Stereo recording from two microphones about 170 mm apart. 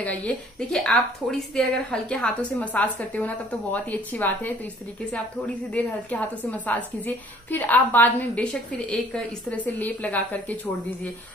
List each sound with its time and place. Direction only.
0.0 s a woman's voice: 10° left (ahead or behind)